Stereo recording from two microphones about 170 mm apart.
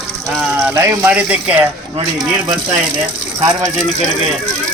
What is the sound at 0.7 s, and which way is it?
Speech, 15° right (ahead or behind).